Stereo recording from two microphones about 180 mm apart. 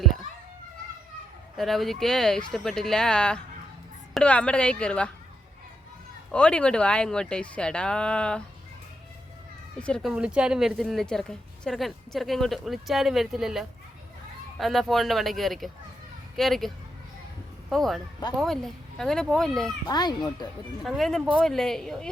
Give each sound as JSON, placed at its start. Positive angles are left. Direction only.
{"t": 1.5, "sound": "a woman's voice", "side_deg": 0}
{"t": 6.3, "sound": "a woman's voice", "side_deg": 5}
{"t": 9.8, "sound": "a woman's voice", "side_deg": 0}
{"t": 19.9, "sound": "speech", "side_deg": 25}
{"t": 20.8, "sound": "a woman's voice", "side_deg": 0}